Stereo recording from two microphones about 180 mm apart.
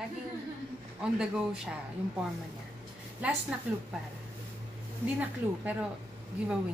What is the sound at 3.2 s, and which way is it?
Speech, 10° right (ahead or behind).